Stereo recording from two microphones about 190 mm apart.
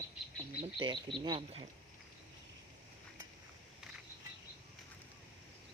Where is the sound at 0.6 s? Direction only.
25° right (ahead or behind).